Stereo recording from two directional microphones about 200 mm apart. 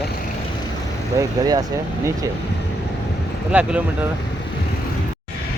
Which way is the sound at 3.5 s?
5° right (ahead or behind).